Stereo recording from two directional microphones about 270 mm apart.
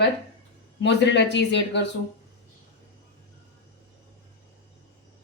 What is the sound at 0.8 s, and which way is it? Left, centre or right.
Speech, left.